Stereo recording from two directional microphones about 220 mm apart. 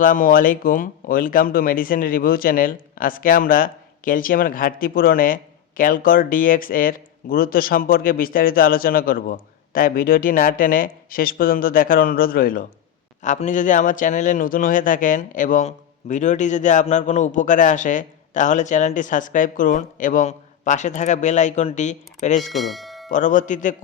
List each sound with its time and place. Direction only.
0.0 s speech: 40° left (ahead or behind)
22.5 s bell: centre (ahead or behind)
23.1 s speech: 35° left (ahead or behind)